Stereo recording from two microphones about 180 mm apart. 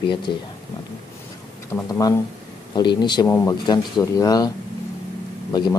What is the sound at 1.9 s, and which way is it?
A man's voice, 20° left (ahead or behind).